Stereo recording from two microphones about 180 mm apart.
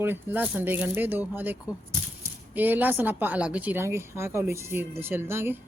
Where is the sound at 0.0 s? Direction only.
10° right (ahead or behind).